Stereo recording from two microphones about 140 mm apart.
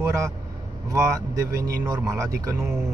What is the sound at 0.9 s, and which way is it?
Speech, 20° right (ahead or behind).